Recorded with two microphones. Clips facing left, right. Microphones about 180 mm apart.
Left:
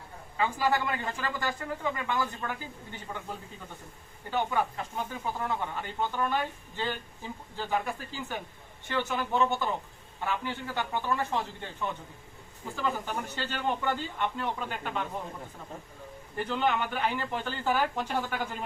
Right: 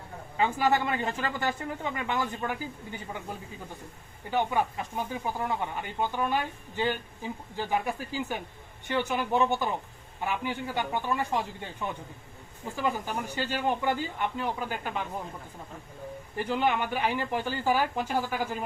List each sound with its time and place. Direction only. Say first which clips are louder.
0.3 s speech: right 2 dB; 20° right (ahead or behind)
4.3 s speech: right 2 dB; 15° right (ahead or behind)
16.4 s speech: right 1 dB; 10° right (ahead or behind)